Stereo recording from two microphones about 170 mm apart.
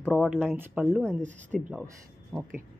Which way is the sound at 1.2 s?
45° right (ahead or behind).